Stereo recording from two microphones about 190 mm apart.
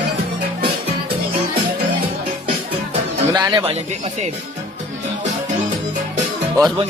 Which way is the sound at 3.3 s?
20° right (ahead or behind).